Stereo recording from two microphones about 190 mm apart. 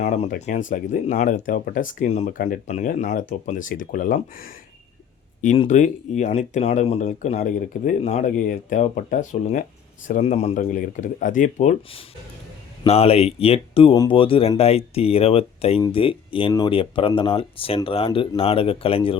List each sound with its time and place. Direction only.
0.0 s speech: 35° left (ahead or behind)
5.6 s speech: 40° left (ahead or behind)